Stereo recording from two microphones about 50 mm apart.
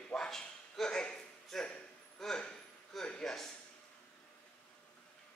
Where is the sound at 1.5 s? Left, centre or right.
Centre.